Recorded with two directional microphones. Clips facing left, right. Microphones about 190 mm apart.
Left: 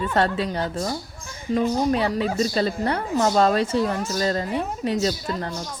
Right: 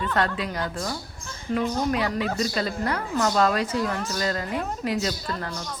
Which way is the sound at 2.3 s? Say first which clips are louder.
Left 4 dB; 30° left (ahead or behind).